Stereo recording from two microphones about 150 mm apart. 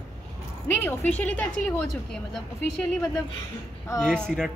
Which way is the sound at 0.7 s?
10° left (ahead or behind).